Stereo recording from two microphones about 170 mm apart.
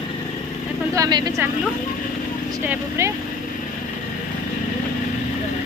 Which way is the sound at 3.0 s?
15° right (ahead or behind).